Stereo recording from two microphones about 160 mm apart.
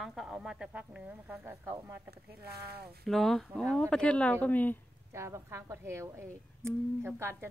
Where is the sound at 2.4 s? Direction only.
80° right.